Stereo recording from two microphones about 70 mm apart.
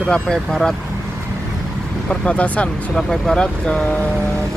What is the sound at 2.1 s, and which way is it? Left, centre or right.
Speech, centre.